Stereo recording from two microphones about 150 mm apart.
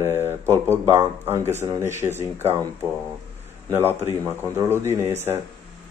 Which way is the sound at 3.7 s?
15° right (ahead or behind).